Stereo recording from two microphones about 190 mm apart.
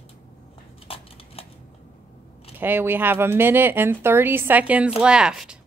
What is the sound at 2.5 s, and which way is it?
Speech, 10° right (ahead or behind).